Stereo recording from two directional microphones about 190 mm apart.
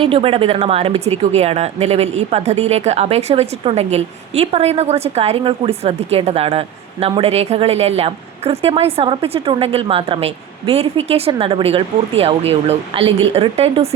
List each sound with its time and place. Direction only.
0.0 s speech: 30° right (ahead or behind)